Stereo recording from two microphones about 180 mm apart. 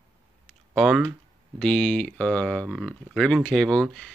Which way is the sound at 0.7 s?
Centre (ahead or behind).